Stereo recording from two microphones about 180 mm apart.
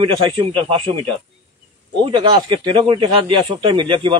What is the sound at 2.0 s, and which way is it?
Speech, 25° right (ahead or behind).